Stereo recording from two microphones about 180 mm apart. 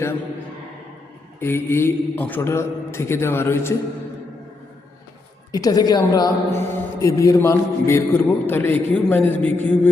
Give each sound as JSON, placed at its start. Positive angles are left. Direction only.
{"t": 1.4, "sound": "a woman's voice", "side_deg": 10}
{"t": 5.5, "sound": "a woman's voice", "side_deg": 20}